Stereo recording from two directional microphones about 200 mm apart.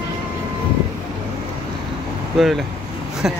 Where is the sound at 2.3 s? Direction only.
Centre (ahead or behind).